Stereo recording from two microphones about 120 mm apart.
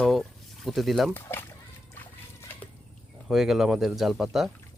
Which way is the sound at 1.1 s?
15° left (ahead or behind).